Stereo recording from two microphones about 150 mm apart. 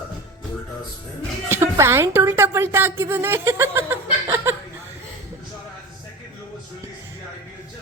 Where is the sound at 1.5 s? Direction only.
20° right (ahead or behind).